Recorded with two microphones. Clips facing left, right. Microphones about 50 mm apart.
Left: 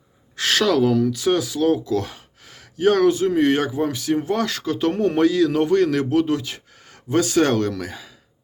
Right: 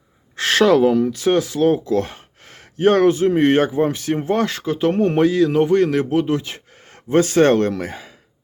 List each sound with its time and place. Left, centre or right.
0.3 s speech: right